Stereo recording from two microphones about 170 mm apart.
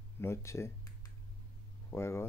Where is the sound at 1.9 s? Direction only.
15° left (ahead or behind).